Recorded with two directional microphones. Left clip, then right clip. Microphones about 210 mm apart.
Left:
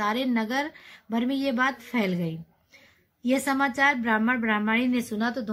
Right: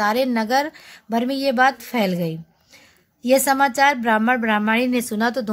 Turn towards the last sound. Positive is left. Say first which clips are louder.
# right 7 dB
turn(degrees=-50)  # may be behind; listen again after turning